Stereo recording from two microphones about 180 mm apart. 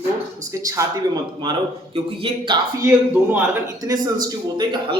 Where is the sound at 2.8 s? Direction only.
10° right (ahead or behind).